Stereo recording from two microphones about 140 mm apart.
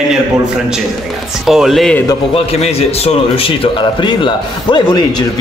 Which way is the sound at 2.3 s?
45° left (ahead or behind).